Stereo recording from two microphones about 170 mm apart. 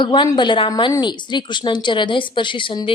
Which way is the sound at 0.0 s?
25° left (ahead or behind).